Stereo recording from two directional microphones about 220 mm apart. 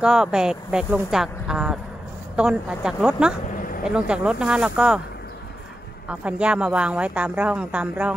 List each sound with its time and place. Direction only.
0.0 s a woman's voice: 5° right (ahead or behind)
3.5 s a sound: 40° left (ahead or behind)
3.8 s a woman's voice: 5° right (ahead or behind)
6.0 s a woman's voice: 5° right (ahead or behind)